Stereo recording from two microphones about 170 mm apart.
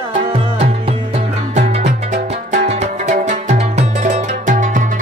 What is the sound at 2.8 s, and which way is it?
Music, 45° right (ahead or behind).